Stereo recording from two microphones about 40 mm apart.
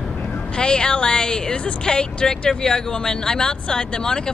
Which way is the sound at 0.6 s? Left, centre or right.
Left.